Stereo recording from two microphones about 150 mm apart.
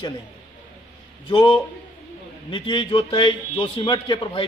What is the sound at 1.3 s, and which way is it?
A man's voice, 35° left (ahead or behind).